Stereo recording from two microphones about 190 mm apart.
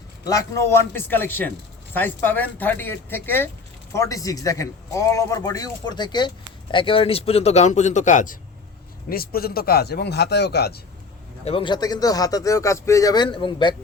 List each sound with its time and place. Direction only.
0.3 s a man's voice: 15° left (ahead or behind); by 8.4 s 40° left (ahead or behind)
9.0 s speech: 50° left (ahead or behind)
11.4 s a man's voice: 25° left (ahead or behind)